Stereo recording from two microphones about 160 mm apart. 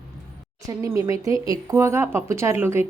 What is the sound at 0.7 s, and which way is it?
A woman's voice, 20° right (ahead or behind).